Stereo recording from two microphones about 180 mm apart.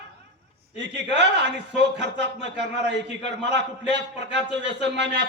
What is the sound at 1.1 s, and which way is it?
A man's voice, 70° right (ahead or behind).